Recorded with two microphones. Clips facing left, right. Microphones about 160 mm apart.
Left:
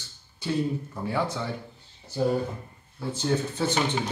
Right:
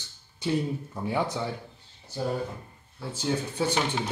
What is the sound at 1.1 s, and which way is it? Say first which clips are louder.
Speech: even; 15° right (ahead or behind).